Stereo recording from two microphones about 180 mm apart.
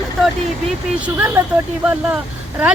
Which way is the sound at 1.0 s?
10° right (ahead or behind).